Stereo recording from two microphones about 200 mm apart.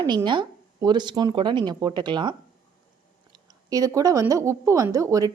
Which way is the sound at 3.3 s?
20° right (ahead or behind).